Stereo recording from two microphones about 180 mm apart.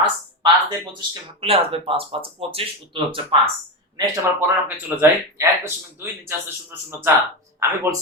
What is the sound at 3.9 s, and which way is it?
Speech, 15° right (ahead or behind).